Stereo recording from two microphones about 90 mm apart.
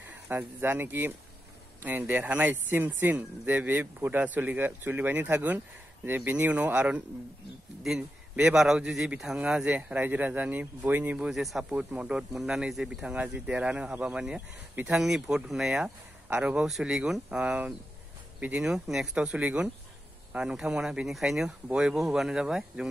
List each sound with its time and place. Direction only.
0.1 s speech: 25° right (ahead or behind)
8.4 s speech: 5° right (ahead or behind)
11.1 s speech: 5° right (ahead or behind)
11.7 s speech: 15° right (ahead or behind)
16.6 s speech: 5° right (ahead or behind)